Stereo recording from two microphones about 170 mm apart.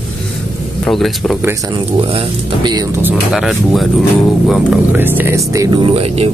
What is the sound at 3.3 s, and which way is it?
Mantra, centre (ahead or behind).